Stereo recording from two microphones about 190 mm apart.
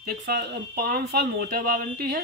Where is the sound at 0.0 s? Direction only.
55° right (ahead or behind).